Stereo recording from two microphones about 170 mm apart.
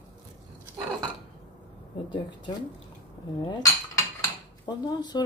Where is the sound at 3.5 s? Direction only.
20° left (ahead or behind).